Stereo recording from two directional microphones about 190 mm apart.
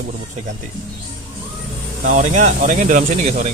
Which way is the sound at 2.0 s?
40° right (ahead or behind).